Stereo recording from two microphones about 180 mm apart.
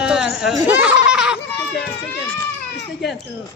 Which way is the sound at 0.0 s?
5° right (ahead or behind).